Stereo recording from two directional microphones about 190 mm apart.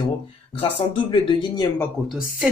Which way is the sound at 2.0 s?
5° right (ahead or behind).